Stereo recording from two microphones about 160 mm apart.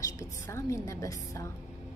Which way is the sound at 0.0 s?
20° left (ahead or behind).